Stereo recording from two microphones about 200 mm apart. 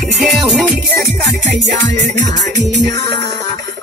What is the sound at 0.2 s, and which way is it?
Music, centre (ahead or behind).